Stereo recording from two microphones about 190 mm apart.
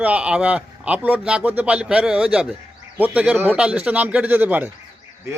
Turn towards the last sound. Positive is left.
turn(degrees=-10)  # may be behind; listen again after turning